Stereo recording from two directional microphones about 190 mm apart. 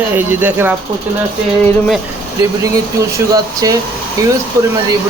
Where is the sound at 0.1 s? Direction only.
10° right (ahead or behind).